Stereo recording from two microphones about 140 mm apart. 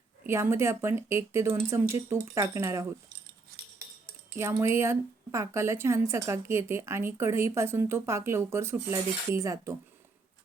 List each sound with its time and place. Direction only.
0.3 s speech: 20° right (ahead or behind)
4.4 s speech: 20° right (ahead or behind)